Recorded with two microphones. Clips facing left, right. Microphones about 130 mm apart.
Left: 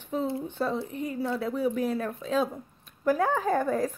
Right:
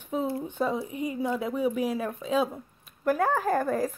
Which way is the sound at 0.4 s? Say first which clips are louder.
Right 1 dB; 15° right (ahead or behind).